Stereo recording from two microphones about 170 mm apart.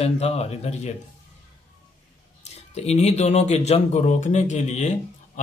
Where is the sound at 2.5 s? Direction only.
40° left (ahead or behind).